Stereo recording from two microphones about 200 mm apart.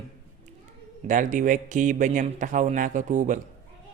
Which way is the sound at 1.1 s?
40° right (ahead or behind).